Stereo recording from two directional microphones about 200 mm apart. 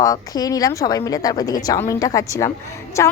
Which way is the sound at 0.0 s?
20° left (ahead or behind).